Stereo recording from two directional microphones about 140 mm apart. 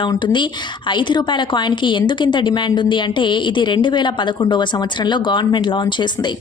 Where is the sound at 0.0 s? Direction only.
35° left (ahead or behind).